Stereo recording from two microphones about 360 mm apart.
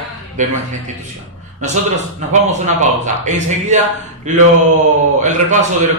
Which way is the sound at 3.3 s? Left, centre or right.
Centre.